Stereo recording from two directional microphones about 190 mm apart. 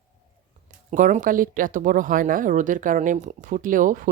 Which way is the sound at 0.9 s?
40° right (ahead or behind).